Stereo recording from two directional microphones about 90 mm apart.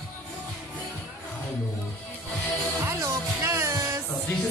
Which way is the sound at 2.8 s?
30° right (ahead or behind).